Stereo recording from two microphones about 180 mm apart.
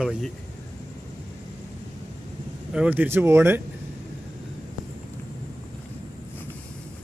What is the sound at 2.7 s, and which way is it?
Speech, 10° right (ahead or behind).